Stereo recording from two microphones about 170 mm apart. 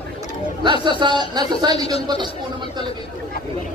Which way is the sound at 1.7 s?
35° left (ahead or behind).